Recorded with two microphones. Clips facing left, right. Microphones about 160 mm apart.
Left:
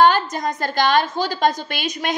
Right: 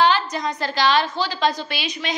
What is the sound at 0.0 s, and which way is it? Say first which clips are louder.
A woman's voice: left 3 dB; 50° left (ahead or behind).